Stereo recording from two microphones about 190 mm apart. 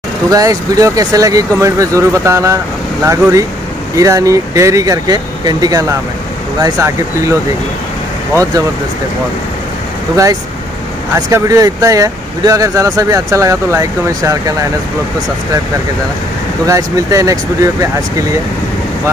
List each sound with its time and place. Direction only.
0.3 s speech: 20° right (ahead or behind)
11.1 s speech: 15° right (ahead or behind)
16.6 s speech: 15° right (ahead or behind)